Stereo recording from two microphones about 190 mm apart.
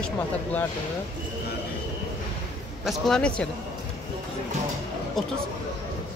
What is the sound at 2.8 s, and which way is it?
Speech, centre (ahead or behind).